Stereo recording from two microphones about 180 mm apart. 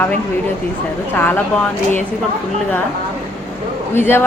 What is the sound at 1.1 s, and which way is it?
Speech, 10° left (ahead or behind).